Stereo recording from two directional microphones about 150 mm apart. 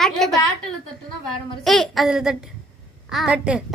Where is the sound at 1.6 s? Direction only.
Centre (ahead or behind).